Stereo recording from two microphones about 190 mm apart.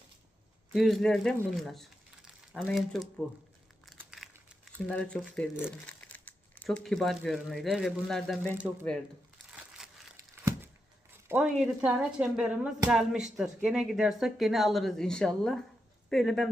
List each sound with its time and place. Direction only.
0.7 s speech: centre (ahead or behind)
3.9 s crumpling: 5° right (ahead or behind)
5.8 s speech: 10° left (ahead or behind)
9.8 s crumpling: centre (ahead or behind)
10.2 s a sound: 15° right (ahead or behind)
11.3 s speech: 5° right (ahead or behind)